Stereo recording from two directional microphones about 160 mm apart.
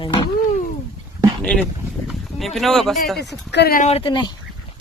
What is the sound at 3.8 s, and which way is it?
Speech, 40° left (ahead or behind).